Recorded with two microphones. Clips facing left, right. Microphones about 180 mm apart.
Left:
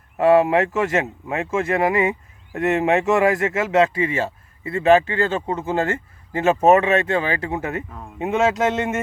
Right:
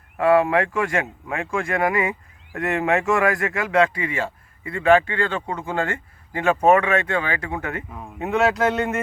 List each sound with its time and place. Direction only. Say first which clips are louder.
0.2 s speech: left 2 dB; 25° left (ahead or behind)